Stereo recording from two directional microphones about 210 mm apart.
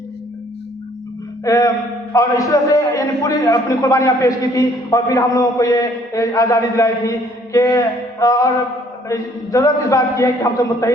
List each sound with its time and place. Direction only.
1.5 s a man's voice: 15° left (ahead or behind)